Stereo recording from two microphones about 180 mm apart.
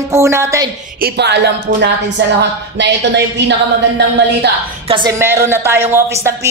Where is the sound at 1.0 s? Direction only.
70° right (ahead or behind).